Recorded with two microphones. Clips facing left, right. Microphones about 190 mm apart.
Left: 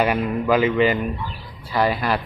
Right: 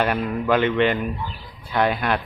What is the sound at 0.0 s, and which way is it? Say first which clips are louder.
Speech: left 2 dB; 5° left (ahead or behind).